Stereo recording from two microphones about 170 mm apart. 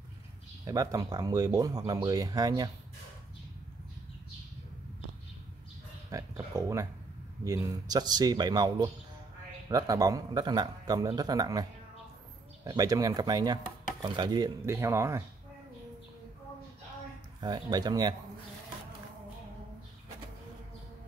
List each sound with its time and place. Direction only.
0.7 s speech: 20° right (ahead or behind)
6.0 s speech: 20° right (ahead or behind)
12.6 s speech: 20° right (ahead or behind)
17.4 s speech: 25° right (ahead or behind)